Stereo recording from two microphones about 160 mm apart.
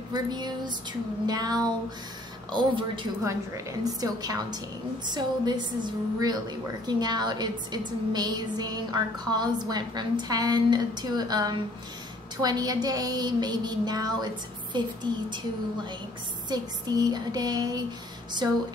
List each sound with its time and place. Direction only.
0.1 s a woman's voice: 25° right (ahead or behind)